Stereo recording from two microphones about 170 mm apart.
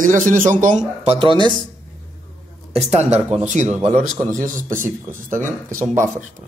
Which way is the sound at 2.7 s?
40° right (ahead or behind).